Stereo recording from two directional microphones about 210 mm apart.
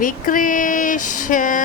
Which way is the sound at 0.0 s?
40° left (ahead or behind).